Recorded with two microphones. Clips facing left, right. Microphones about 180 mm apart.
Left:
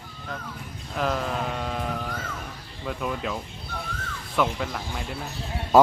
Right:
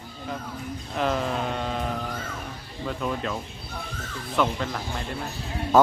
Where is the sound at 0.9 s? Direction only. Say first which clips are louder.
Right 1 dB; centre (ahead or behind).